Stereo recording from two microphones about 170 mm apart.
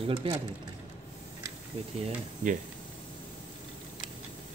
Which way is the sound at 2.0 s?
45° right (ahead or behind).